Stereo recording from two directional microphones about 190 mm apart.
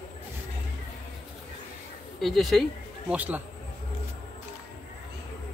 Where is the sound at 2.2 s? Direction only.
Centre (ahead or behind).